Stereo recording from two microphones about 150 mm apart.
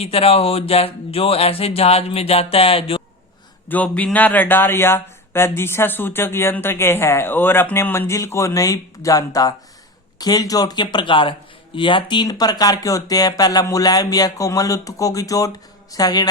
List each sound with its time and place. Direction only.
0.0 s speech: 40° left (ahead or behind)
3.7 s speech: 10° left (ahead or behind); by 16.2 s 25° left (ahead or behind)